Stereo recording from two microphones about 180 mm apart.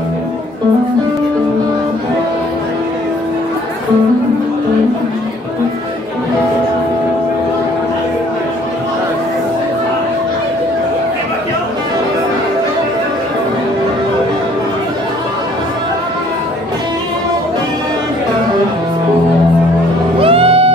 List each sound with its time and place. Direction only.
20.2 s music: 30° right (ahead or behind)